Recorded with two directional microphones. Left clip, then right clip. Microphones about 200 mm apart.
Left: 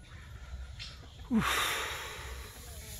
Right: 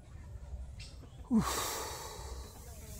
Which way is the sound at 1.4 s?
20° right (ahead or behind).